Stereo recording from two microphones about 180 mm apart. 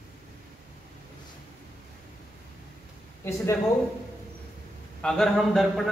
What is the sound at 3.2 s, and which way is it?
Speech, 15° left (ahead or behind).